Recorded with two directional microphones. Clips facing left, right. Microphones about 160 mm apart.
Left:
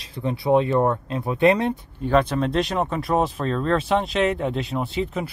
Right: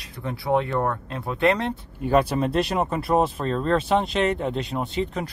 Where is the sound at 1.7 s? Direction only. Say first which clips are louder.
Left 1 dB; 10° right (ahead or behind).